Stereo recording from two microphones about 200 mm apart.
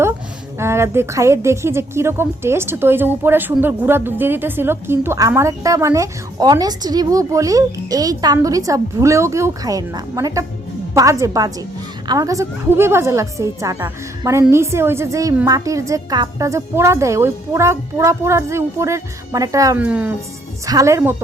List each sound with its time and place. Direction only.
0.6 s a woman's voice: 15° right (ahead or behind)